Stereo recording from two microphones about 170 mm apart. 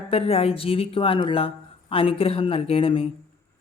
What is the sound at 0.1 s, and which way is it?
Speech, 35° left (ahead or behind).